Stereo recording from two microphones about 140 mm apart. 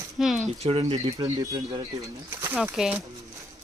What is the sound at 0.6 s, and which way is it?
Speech, 40° right (ahead or behind).